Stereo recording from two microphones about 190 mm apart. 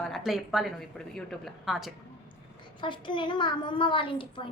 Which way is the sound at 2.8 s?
25° left (ahead or behind).